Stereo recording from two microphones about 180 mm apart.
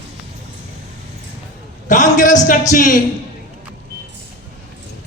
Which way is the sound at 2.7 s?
45° left (ahead or behind).